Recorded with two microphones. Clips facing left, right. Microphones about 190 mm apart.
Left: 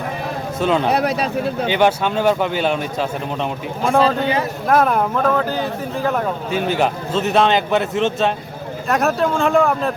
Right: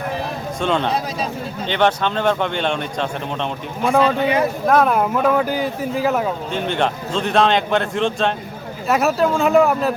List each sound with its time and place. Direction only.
0.6 s a man's voice: 5° left (ahead or behind)
0.9 s speech: 65° left (ahead or behind)
1.6 s a man's voice: 10° left (ahead or behind); by 6.2 s 5° right (ahead or behind)
6.5 s a man's voice: 5° left (ahead or behind)